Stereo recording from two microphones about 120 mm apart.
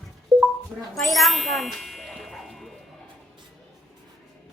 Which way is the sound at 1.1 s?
Centre (ahead or behind).